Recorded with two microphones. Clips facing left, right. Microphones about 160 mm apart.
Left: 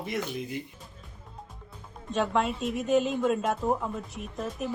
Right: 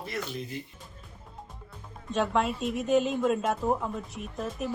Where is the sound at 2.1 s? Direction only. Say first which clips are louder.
Even; centre (ahead or behind).